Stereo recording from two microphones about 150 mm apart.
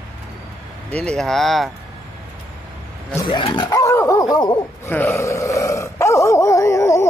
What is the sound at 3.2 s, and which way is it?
Speech, 30° left (ahead or behind).